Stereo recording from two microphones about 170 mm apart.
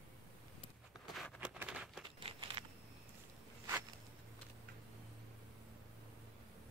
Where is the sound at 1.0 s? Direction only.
Centre (ahead or behind).